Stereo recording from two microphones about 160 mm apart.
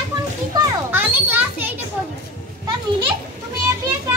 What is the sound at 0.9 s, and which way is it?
Children playing, 10° right (ahead or behind).